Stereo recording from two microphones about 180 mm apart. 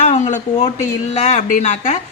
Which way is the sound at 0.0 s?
40° left (ahead or behind).